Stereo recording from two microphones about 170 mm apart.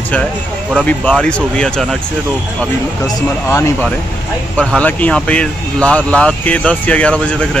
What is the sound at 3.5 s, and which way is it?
Speech, 15° left (ahead or behind).